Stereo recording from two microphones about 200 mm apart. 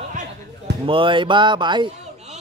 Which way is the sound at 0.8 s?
25° right (ahead or behind).